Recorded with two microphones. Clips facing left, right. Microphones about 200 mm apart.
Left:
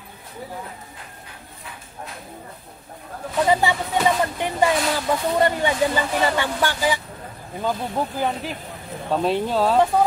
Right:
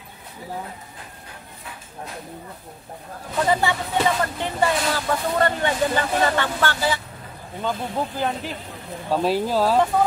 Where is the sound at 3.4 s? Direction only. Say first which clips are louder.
Left 2 dB; 15° left (ahead or behind).